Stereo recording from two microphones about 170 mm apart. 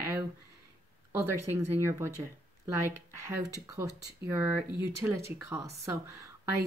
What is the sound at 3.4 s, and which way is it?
Speech, 20° right (ahead or behind).